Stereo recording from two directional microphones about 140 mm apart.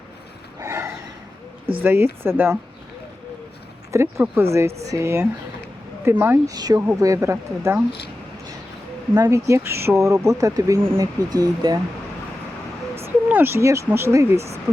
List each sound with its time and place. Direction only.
0.6 s snort: 20° right (ahead or behind)
1.8 s speech: 15° right (ahead or behind)
3.9 s speech: 15° right (ahead or behind)
6.5 s speech: 30° right (ahead or behind)
9.1 s speech: 20° right (ahead or behind)
13.0 s speech: 15° right (ahead or behind)
14.3 s speech: 50° right (ahead or behind)